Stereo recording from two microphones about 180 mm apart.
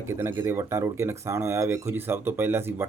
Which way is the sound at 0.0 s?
15° right (ahead or behind).